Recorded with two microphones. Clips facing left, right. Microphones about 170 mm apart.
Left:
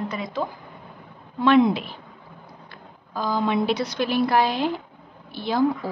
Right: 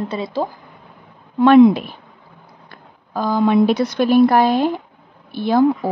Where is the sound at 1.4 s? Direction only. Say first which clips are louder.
Right 8 dB; 50° right (ahead or behind).